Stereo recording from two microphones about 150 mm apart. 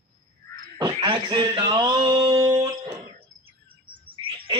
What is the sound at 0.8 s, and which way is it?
Frog, 30° right (ahead or behind).